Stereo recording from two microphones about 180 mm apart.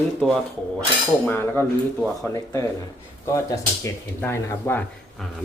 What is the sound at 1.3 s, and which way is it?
Speech, 10° left (ahead or behind).